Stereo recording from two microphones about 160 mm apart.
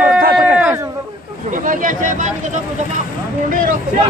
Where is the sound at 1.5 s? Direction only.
55° right (ahead or behind).